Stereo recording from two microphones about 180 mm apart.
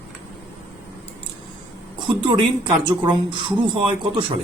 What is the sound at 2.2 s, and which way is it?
Speech, 25° right (ahead or behind).